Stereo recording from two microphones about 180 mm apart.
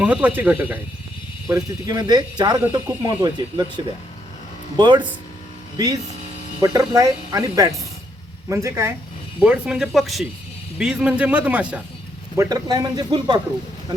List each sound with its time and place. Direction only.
0.0 s speech: 10° right (ahead or behind)
4.8 s speech: 25° right (ahead or behind); by 11.8 s 5° right (ahead or behind)
12.4 s speech: 20° right (ahead or behind)